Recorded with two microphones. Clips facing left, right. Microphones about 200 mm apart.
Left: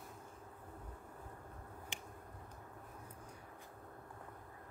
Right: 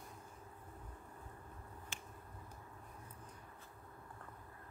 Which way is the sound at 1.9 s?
15° left (ahead or behind).